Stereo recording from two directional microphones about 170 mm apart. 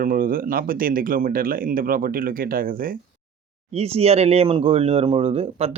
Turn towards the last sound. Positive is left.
turn(degrees=-35)  # may be behind; listen again after turning